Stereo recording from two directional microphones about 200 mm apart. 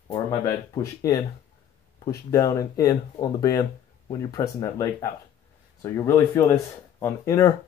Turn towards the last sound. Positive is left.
turn(degrees=15)  # may be behind; listen again after turning